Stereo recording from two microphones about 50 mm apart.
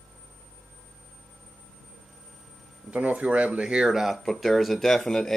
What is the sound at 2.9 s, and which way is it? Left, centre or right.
Speech, right.